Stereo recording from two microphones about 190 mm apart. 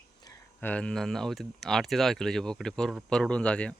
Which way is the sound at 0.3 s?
10° left (ahead or behind).